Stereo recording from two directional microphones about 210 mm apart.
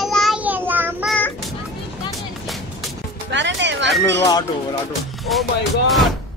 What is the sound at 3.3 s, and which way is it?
Speech, 60° right (ahead or behind).